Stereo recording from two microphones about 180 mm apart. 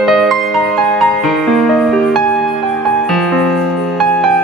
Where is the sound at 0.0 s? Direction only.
Centre (ahead or behind).